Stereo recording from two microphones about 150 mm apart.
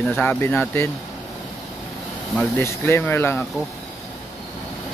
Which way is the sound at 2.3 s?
15° left (ahead or behind).